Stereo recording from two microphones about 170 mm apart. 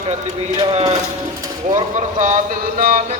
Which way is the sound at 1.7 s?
45° right (ahead or behind).